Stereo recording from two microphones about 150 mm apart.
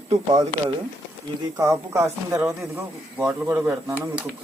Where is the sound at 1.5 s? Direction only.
20° right (ahead or behind).